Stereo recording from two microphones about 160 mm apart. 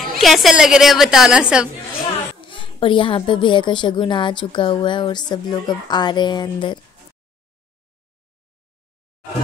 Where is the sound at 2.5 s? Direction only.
30° left (ahead or behind).